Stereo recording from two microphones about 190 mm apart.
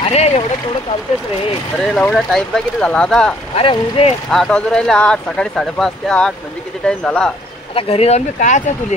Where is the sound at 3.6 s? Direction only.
30° left (ahead or behind).